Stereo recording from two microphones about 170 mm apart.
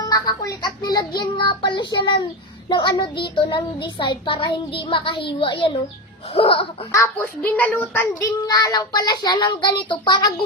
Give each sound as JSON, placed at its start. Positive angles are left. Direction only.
{"t": 0.0, "sound": "a child's voice", "side_deg": 20}
{"t": 6.3, "sound": "laughter", "side_deg": 30}
{"t": 6.9, "sound": "a child's voice", "side_deg": 15}